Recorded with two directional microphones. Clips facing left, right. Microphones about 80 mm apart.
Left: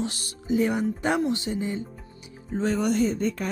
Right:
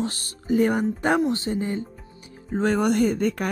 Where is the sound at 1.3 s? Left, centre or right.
Right.